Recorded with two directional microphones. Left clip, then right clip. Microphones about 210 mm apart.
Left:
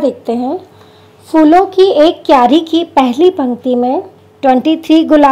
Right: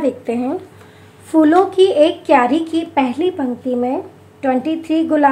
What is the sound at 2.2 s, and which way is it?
A woman's voice, 30° left (ahead or behind).